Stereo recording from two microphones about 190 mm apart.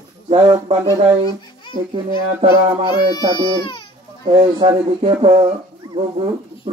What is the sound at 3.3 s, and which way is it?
Speech, 25° left (ahead or behind).